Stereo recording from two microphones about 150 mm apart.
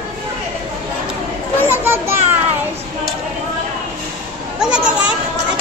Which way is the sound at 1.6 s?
15° right (ahead or behind).